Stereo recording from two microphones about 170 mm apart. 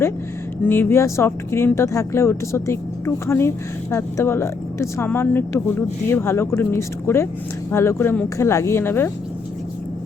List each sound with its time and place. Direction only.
0.6 s speech: 10° left (ahead or behind)